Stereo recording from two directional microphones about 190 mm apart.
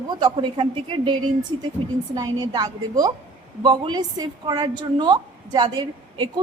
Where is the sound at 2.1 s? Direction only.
20° right (ahead or behind).